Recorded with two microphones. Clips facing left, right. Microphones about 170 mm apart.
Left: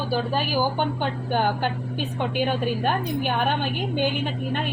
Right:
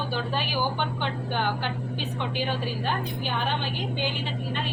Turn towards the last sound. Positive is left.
turn(degrees=50)  # may be behind; listen again after turning